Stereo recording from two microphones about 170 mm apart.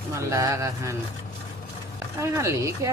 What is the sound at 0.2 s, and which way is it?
Speech, 20° right (ahead or behind).